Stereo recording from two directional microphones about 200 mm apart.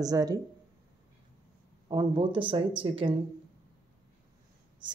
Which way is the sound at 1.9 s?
25° right (ahead or behind).